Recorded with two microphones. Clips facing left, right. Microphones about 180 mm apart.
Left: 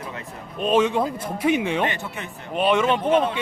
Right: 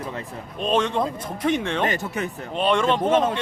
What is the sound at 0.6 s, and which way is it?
Speech, 5° left (ahead or behind).